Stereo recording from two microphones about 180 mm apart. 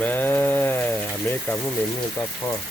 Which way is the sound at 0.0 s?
10° left (ahead or behind).